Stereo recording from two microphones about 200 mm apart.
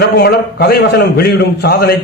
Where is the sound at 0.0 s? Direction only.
55° left (ahead or behind).